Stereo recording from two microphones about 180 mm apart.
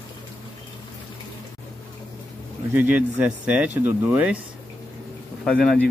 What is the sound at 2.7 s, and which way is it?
Speech, 10° right (ahead or behind).